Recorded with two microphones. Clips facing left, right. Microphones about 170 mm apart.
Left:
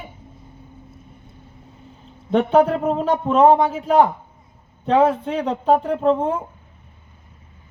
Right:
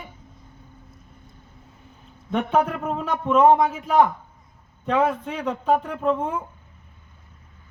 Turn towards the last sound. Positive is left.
turn(degrees=30)  # may be behind; listen again after turning